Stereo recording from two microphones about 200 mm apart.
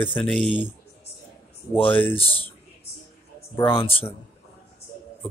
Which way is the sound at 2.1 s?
30° left (ahead or behind).